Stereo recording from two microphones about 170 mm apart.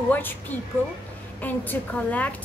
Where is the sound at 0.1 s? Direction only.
10° left (ahead or behind).